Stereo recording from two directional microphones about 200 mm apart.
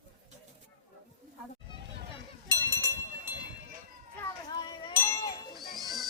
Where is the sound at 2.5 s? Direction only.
15° right (ahead or behind).